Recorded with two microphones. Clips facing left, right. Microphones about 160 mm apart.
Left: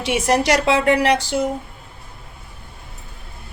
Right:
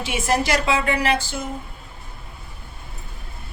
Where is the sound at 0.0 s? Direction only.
80° left.